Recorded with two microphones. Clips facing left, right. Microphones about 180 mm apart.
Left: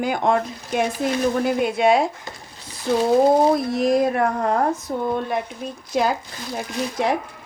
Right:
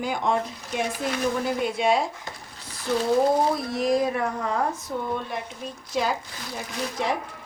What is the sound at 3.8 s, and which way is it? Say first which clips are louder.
A woman's voice: left 3 dB; 55° left (ahead or behind).